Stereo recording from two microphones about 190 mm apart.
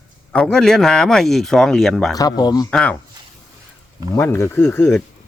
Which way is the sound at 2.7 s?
5° left (ahead or behind).